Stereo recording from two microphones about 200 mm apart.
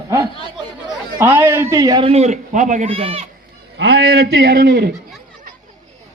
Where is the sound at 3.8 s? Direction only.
55° right (ahead or behind).